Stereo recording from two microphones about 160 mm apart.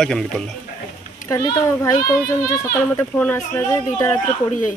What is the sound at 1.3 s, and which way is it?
Speech, 20° left (ahead or behind).